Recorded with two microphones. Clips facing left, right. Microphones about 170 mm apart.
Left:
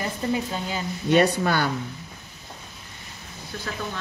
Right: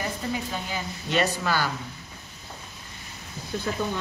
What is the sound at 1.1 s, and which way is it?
Speech, 55° left (ahead or behind).